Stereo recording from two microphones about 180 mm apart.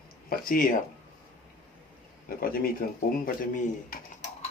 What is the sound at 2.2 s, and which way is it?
Speech, 55° left (ahead or behind).